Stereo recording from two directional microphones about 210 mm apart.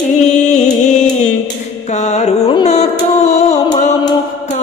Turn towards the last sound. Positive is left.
turn(degrees=35)  # may be behind; listen again after turning